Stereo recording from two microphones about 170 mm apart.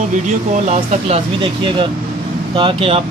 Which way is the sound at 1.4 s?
30° right (ahead or behind).